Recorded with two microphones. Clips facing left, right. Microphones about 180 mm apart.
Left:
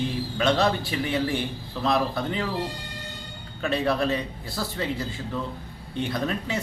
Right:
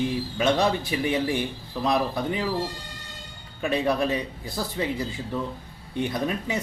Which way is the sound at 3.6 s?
15° right (ahead or behind).